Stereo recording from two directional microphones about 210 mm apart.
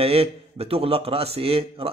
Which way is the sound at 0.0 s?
30° right (ahead or behind).